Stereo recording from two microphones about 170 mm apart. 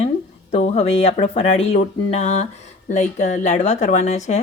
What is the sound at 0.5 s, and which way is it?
A woman's voice, 40° left (ahead or behind).